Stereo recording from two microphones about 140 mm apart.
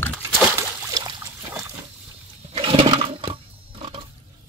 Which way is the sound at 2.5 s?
40° right (ahead or behind).